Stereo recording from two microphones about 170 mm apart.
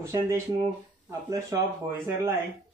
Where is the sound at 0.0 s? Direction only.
15° right (ahead or behind).